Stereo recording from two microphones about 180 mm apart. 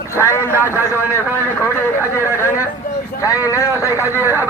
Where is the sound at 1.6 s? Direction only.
15° left (ahead or behind).